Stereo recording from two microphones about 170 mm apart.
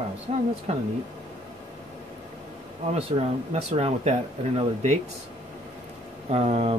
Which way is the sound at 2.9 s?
35° right (ahead or behind).